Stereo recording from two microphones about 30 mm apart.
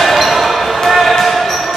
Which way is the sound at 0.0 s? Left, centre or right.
Centre.